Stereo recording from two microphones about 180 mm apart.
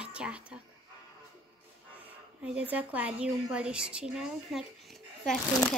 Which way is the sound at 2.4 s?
5° right (ahead or behind).